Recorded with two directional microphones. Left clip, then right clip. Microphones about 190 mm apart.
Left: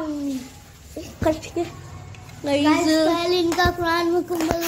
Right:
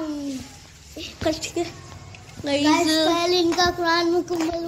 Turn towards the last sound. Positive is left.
turn(degrees=0)  # may be behind; listen again after turning